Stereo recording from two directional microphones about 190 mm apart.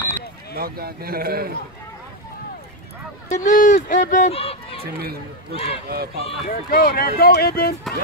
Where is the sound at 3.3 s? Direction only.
40° left (ahead or behind).